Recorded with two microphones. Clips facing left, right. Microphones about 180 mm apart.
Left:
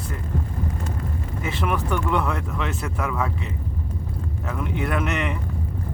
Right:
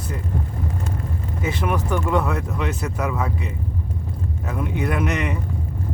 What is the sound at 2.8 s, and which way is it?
Speech, 20° right (ahead or behind).